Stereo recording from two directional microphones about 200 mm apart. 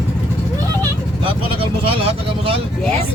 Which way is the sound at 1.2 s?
25° right (ahead or behind).